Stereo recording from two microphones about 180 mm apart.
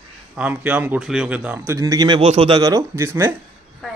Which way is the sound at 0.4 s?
10° right (ahead or behind).